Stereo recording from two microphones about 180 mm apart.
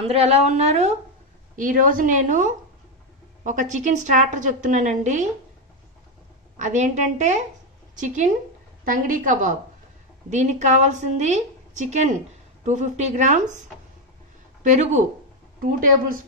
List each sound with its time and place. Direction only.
0.0 s a woman's voice: 35° right (ahead or behind)
1.6 s a woman's voice: 50° right (ahead or behind)
6.5 s a woman's voice: 40° right (ahead or behind)
14.6 s a woman's voice: 40° right (ahead or behind)